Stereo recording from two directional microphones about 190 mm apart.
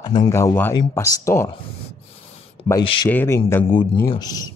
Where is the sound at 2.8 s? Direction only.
25° left (ahead or behind).